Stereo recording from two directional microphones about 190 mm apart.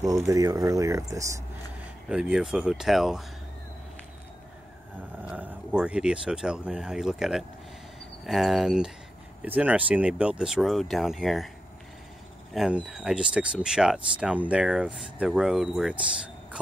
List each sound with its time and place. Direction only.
0.3 s speech: 20° right (ahead or behind)
2.0 s speech: 5° right (ahead or behind)
5.2 s speech: 5° right (ahead or behind)
12.5 s speech: centre (ahead or behind)